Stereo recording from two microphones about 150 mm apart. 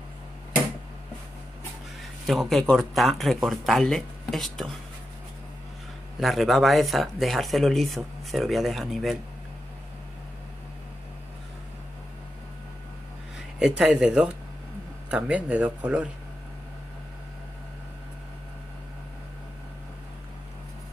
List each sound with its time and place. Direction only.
2.2 s speech: centre (ahead or behind)
6.1 s speech: centre (ahead or behind)
13.6 s speech: 5° right (ahead or behind)